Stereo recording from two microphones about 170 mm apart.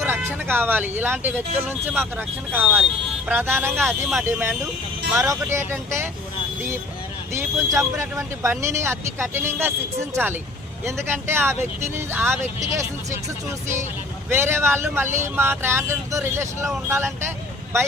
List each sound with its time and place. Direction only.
0.0 s speech: 10° right (ahead or behind)
7.3 s speech: 15° right (ahead or behind)
14.3 s speech: 15° right (ahead or behind)